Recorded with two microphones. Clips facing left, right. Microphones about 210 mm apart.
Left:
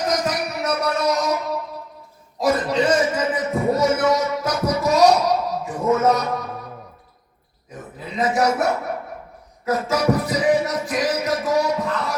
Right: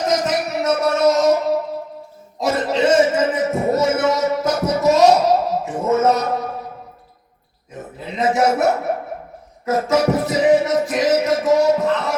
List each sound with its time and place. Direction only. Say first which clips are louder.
0.1 s a sound: right 3 dB; 25° right (ahead or behind)
8.0 s dog: right 2 dB; 25° right (ahead or behind)
9.9 s music: right 3 dB; 25° right (ahead or behind)